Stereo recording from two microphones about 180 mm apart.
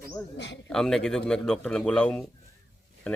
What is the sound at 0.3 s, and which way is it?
Speech, 70° left (ahead or behind).